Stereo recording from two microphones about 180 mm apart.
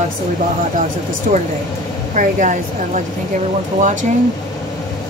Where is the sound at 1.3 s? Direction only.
50° right (ahead or behind).